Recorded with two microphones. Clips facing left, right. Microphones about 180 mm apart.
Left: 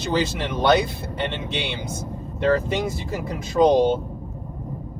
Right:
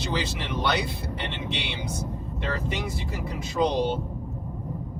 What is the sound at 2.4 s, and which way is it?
Speech, 50° left (ahead or behind).